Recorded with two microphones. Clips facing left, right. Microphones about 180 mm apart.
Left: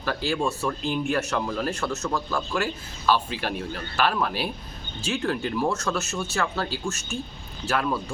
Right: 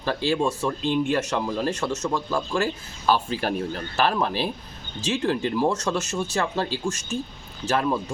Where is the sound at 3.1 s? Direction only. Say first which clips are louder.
Right 2 dB; 45° right (ahead or behind).